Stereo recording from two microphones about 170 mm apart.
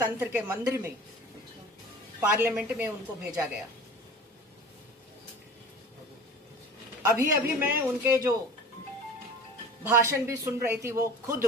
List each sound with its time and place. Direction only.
0.0 s a man's voice: 10° right (ahead or behind)
2.4 s a man's voice: 10° right (ahead or behind)
7.1 s a man's voice: 10° right (ahead or behind)
9.8 s a man's voice: 15° right (ahead or behind)